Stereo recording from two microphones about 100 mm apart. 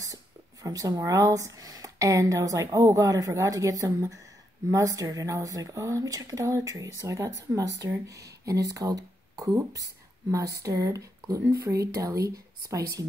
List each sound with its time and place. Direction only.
0.0 s speech: 35° right (ahead or behind)